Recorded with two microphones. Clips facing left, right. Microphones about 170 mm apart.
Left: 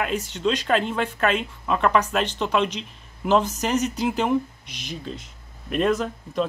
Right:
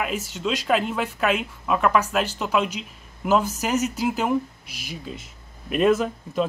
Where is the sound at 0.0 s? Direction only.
5° right (ahead or behind).